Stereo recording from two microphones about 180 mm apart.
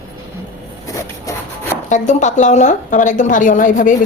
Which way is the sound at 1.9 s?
40° left (ahead or behind).